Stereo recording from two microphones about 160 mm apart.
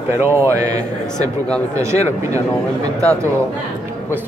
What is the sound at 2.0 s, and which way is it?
Speech, 20° right (ahead or behind).